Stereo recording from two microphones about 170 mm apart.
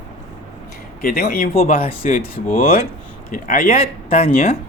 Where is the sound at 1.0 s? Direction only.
65° left (ahead or behind).